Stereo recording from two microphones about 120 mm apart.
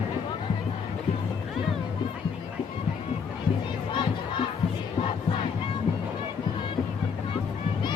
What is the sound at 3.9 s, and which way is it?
Battle cry, 40° left (ahead or behind).